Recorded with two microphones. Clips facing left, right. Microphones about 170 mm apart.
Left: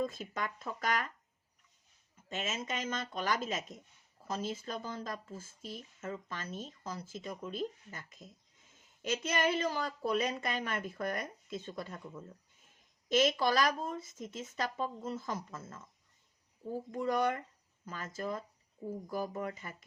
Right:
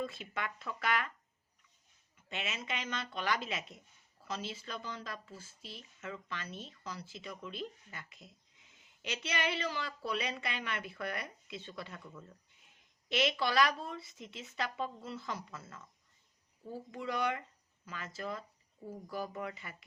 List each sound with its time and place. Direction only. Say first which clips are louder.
0.0 s speech: left 3 dB; 40° left (ahead or behind)
2.1 s speech: left 3 dB; 45° left (ahead or behind)